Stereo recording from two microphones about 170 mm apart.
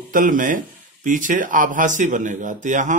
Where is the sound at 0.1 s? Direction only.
55° right (ahead or behind).